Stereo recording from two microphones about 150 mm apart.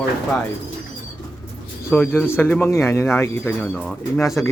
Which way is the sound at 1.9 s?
15° left (ahead or behind).